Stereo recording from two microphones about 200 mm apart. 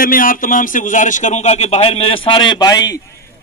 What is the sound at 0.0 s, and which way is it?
A man's voice, 45° left (ahead or behind).